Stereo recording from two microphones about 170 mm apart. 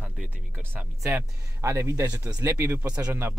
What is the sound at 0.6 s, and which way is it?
Speech, 10° right (ahead or behind).